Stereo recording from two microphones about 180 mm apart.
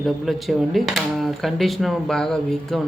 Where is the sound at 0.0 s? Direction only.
Centre (ahead or behind).